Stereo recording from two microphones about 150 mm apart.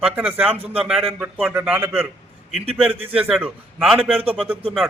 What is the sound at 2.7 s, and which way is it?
Speech, 40° right (ahead or behind).